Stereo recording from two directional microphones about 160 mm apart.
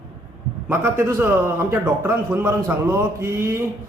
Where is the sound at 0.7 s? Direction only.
15° right (ahead or behind).